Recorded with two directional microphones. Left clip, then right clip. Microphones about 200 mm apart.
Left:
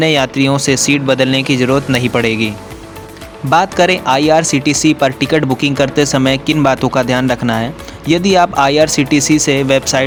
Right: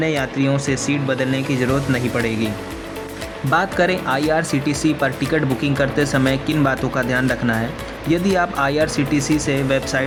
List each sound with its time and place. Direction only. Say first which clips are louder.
0.0 s speech: left 8 dB; 35° left (ahead or behind)
3.5 s speech: left 7 dB; 25° left (ahead or behind)